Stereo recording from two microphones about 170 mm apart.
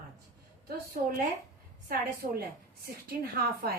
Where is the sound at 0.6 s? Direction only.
60° right (ahead or behind).